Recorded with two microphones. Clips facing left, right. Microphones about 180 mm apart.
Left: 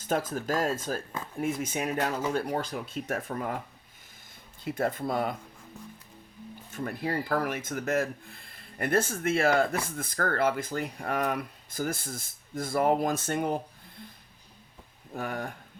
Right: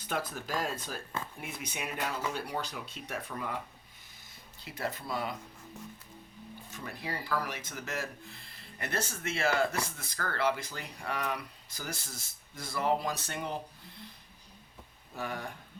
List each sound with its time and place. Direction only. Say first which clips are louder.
0.0 s speech: left 7 dB; 45° left (ahead or behind)
4.6 s speech: left 8 dB; 50° left (ahead or behind)
6.7 s speech: left 8 dB; 50° left (ahead or behind)
15.1 s speech: left 4 dB; 50° left (ahead or behind)